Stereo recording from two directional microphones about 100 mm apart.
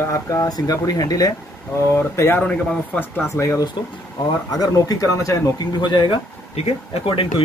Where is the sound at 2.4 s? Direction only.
10° left (ahead or behind).